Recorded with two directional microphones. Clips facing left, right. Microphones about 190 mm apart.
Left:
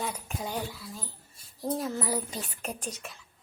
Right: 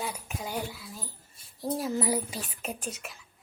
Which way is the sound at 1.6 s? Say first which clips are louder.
Right 1 dB; 10° right (ahead or behind).